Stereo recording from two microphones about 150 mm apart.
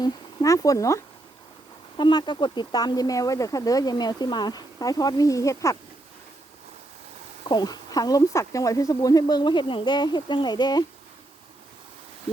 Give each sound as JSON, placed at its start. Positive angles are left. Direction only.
{"t": 0.0, "sound": "speech", "side_deg": 20}
{"t": 7.4, "sound": "speech", "side_deg": 25}